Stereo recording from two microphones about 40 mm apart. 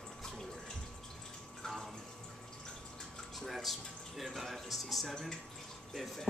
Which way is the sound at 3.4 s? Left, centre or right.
Centre.